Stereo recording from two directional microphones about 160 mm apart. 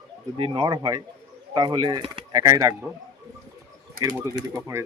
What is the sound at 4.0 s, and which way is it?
Speech, 70° right (ahead or behind).